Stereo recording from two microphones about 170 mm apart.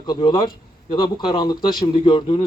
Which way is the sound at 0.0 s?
25° left (ahead or behind).